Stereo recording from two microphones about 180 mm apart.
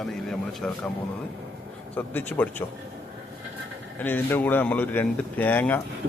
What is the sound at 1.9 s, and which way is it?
Speech, 10° left (ahead or behind).